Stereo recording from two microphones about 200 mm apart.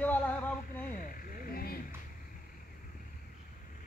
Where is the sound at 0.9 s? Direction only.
45° left (ahead or behind).